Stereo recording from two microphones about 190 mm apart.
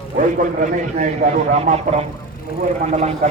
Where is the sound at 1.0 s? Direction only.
45° right (ahead or behind).